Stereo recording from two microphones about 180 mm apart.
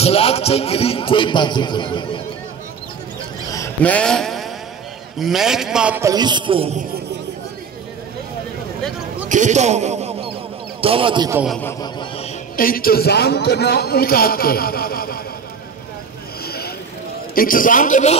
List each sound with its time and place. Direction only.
0.0 s a man's voice: 35° left (ahead or behind)
3.4 s a sound: 15° left (ahead or behind)
5.2 s a man's voice: centre (ahead or behind)
6.0 s a man's voice: 25° right (ahead or behind)
9.3 s a man's voice: 40° right (ahead or behind)
11.8 s a man's voice: 25° left (ahead or behind)
12.5 s a man's voice: 55° left (ahead or behind)
16.4 s a sound: 60° left (ahead or behind)
17.4 s a man's voice: 50° left (ahead or behind)